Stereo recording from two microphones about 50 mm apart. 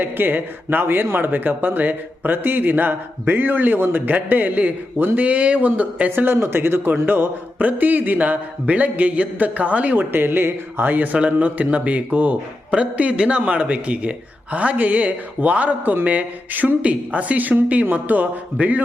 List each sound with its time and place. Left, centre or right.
0.0 s speech: right
6.1 s speech: right